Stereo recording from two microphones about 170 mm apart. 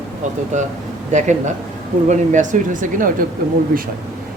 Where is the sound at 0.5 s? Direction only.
45° right (ahead or behind).